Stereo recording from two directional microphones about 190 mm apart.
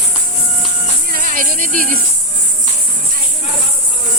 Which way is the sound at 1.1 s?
45° right (ahead or behind).